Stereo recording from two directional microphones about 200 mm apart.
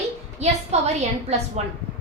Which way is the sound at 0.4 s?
35° right (ahead or behind).